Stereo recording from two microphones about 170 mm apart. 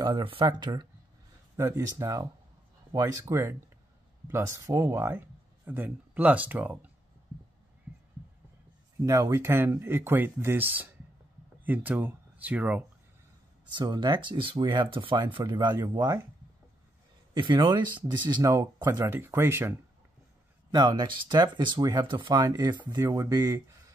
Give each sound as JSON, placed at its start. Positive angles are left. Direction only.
{"t": 0.0, "sound": "speech", "side_deg": -30}
{"t": 9.0, "sound": "speech", "side_deg": -20}
{"t": 13.7, "sound": "speech", "side_deg": -25}
{"t": 17.3, "sound": "speech", "side_deg": -25}
{"t": 20.7, "sound": "speech", "side_deg": -25}